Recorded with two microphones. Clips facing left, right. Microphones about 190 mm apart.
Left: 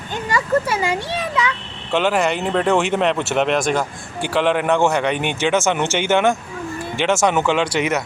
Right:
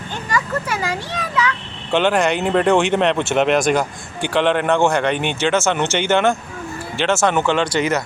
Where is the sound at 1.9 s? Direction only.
5° left (ahead or behind).